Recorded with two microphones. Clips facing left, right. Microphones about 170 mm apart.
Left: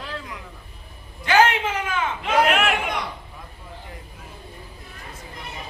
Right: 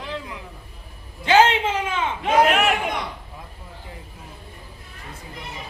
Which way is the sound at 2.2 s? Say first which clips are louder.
Right 2 dB; 40° right (ahead or behind).